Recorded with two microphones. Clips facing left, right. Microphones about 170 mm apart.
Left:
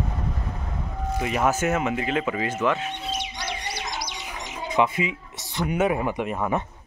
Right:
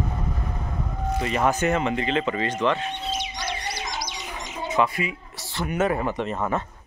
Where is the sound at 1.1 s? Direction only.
10° left (ahead or behind).